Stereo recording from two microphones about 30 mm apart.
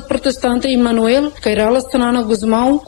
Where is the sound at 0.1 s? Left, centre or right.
Right.